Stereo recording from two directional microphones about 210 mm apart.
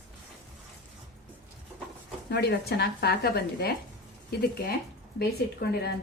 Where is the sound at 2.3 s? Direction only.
50° left (ahead or behind).